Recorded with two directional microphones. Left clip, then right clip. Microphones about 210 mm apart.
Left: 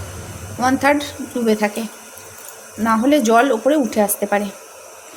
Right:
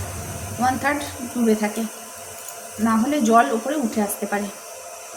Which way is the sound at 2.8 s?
45° left (ahead or behind).